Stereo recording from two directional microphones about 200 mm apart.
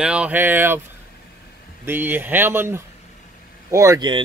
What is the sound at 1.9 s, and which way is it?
Speech, 10° right (ahead or behind).